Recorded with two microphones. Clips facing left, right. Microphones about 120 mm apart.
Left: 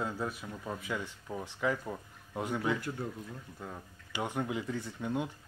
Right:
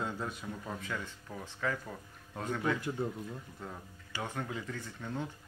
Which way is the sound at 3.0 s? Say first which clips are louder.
Right 3 dB; 20° right (ahead or behind).